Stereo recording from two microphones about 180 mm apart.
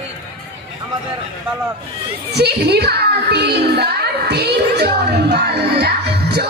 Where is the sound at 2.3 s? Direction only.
65° right (ahead or behind).